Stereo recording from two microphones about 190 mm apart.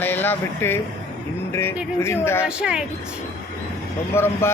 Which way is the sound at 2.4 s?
5° right (ahead or behind).